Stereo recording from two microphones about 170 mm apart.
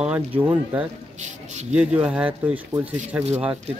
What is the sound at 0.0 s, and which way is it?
Speech, 10° right (ahead or behind).